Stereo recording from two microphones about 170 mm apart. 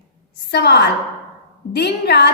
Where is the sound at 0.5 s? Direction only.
75° left (ahead or behind).